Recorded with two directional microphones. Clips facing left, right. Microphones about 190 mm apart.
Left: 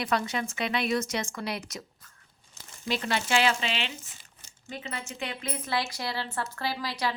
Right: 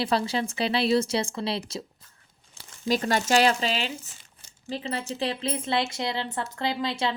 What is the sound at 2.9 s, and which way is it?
A woman's voice, 40° right (ahead or behind).